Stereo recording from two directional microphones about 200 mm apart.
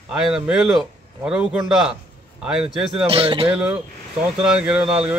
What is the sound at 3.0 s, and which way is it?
Speech, 30° right (ahead or behind).